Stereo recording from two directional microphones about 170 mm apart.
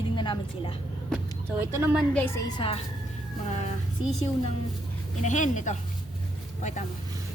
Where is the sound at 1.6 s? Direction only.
15° right (ahead or behind).